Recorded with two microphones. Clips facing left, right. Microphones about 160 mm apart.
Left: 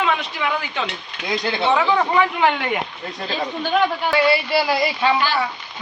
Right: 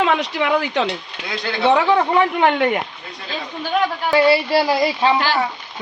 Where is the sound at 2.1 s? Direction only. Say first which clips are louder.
Right 2 dB; 50° right (ahead or behind).